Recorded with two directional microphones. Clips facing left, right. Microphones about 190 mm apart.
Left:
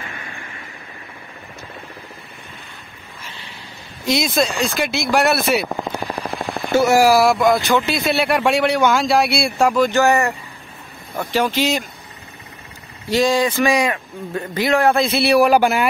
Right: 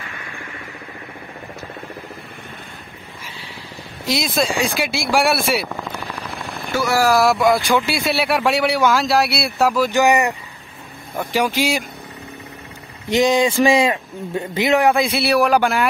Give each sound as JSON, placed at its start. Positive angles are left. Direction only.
{"t": 4.0, "sound": "speech", "side_deg": 0}
{"t": 6.7, "sound": "speech", "side_deg": 25}
{"t": 7.0, "sound": "speech", "side_deg": 5}
{"t": 13.1, "sound": "a man's voice", "side_deg": -20}
{"t": 14.9, "sound": "speech", "side_deg": -10}